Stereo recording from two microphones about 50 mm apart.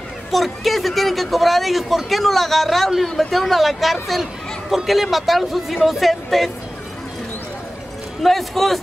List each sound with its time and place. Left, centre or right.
0.3 s speech: centre
8.2 s speech: centre